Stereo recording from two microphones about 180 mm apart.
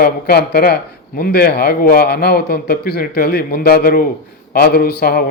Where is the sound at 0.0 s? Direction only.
60° left (ahead or behind).